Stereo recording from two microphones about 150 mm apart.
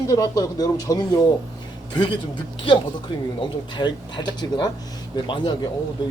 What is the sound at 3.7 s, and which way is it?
Speech, 30° left (ahead or behind).